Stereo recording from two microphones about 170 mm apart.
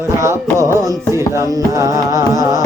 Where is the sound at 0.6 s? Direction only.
15° right (ahead or behind).